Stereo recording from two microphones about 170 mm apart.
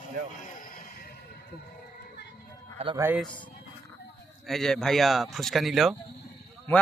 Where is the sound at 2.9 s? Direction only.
15° right (ahead or behind).